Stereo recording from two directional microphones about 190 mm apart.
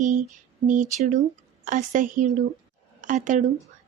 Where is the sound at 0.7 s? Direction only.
40° right (ahead or behind).